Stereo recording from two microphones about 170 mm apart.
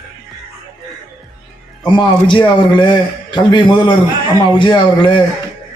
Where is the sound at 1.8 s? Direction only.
25° left (ahead or behind).